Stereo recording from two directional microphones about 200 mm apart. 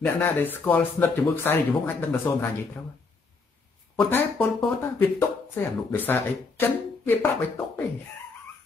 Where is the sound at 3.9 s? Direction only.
10° left (ahead or behind).